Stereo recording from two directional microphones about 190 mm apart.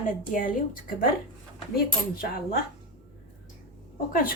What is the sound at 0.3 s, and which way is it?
Speech, 45° left (ahead or behind).